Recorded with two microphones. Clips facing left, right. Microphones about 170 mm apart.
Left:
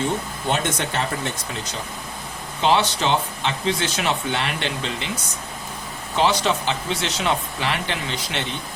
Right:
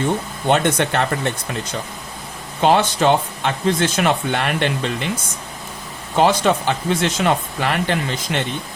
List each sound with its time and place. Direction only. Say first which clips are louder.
0.4 s speech: right 8 dB; 60° right (ahead or behind)
2.6 s speech: right 4 dB; 50° right (ahead or behind)
6.1 s speech: right 5 dB; 50° right (ahead or behind)